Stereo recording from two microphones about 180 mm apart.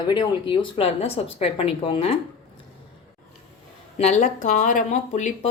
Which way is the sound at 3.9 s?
40° left (ahead or behind).